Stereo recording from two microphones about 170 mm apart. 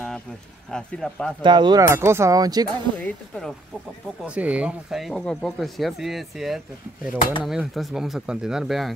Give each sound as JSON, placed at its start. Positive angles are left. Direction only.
{"t": 0.7, "sound": "speech", "side_deg": 5}
{"t": 1.4, "sound": "speech", "side_deg": -25}
{"t": 2.0, "sound": "speech", "side_deg": -15}
{"t": 3.0, "sound": "speech", "side_deg": 5}
{"t": 4.2, "sound": "speech", "side_deg": -10}